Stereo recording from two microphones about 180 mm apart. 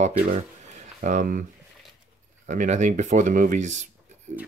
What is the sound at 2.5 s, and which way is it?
Speech, 40° right (ahead or behind).